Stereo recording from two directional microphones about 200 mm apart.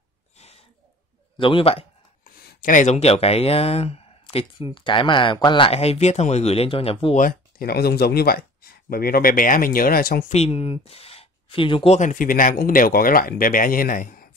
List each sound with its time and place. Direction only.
1.4 s speech: 25° left (ahead or behind)
2.4 s speech: 40° left (ahead or behind)
7.2 s speech: 45° left (ahead or behind)
10.3 s speech: 30° left (ahead or behind)